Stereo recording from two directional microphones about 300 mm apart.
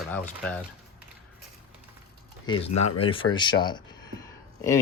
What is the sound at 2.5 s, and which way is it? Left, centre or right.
Speech, centre.